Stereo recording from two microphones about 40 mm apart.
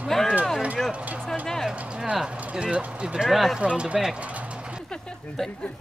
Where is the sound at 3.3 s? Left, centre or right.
Centre.